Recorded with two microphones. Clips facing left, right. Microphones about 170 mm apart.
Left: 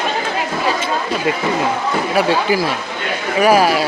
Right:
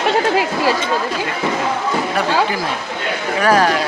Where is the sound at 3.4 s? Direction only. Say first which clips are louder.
Left 2 dB; 10° left (ahead or behind).